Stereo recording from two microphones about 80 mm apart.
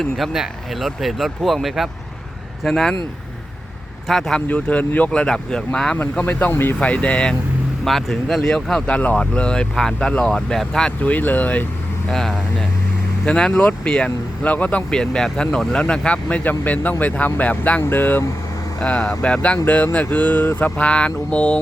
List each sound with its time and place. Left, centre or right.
0.0 s speech: centre
4.1 s speech: centre
4.4 s speech: centre
6.1 s speech: left
6.7 s speech: centre
7.9 s speech: centre
11.0 s speech: left
12.1 s speech: centre; by 18.3 s left
18.8 s speech: centre